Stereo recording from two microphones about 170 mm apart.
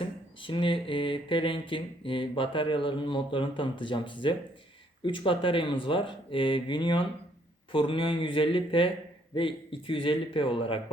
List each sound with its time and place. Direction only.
0.0 s a man's voice: 30° left (ahead or behind)